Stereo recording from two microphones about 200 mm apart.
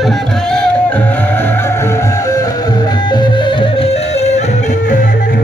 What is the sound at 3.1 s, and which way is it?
Music, 25° left (ahead or behind).